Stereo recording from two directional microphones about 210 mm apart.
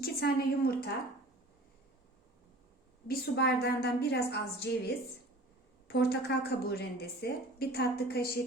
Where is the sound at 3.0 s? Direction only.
50° left (ahead or behind).